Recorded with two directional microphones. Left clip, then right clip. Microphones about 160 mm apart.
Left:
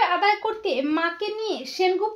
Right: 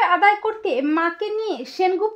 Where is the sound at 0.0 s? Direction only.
40° right (ahead or behind).